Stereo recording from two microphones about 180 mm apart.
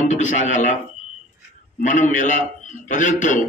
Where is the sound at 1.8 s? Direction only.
45° left (ahead or behind).